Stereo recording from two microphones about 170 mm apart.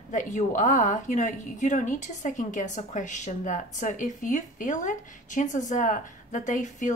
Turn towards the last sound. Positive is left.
turn(degrees=50)  # may be behind; listen again after turning